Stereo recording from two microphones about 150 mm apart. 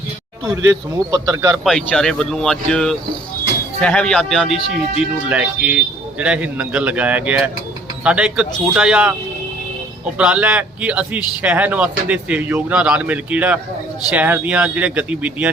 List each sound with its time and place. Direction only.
0.4 s speech: 25° right (ahead or behind)
1.6 s speech: 5° left (ahead or behind)
10.2 s speech: 5° right (ahead or behind)